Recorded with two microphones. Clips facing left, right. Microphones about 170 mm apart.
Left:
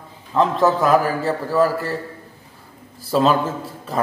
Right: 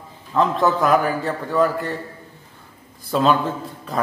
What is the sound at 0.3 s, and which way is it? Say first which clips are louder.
Speech: left 2 dB; centre (ahead or behind).